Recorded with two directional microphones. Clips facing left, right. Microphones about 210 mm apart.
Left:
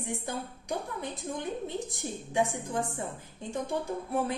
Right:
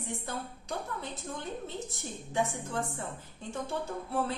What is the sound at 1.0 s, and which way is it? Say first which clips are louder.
A woman's voice: left 4 dB; 15° left (ahead or behind).